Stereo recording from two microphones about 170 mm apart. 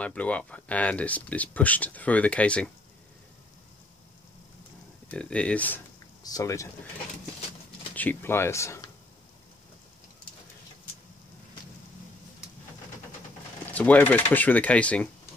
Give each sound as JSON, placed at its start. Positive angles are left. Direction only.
{"t": 0.0, "sound": "speech", "side_deg": 10}
{"t": 5.0, "sound": "speech", "side_deg": 5}
{"t": 6.2, "sound": "speech", "side_deg": 20}
{"t": 7.9, "sound": "speech", "side_deg": 10}
{"t": 13.7, "sound": "speech", "side_deg": 10}